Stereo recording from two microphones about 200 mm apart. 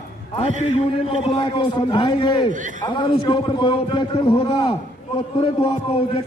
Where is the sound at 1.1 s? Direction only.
25° left (ahead or behind).